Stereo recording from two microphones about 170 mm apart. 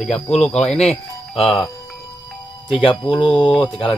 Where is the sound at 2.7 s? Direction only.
30° left (ahead or behind).